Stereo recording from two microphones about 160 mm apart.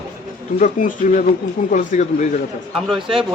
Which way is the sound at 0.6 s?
55° left (ahead or behind).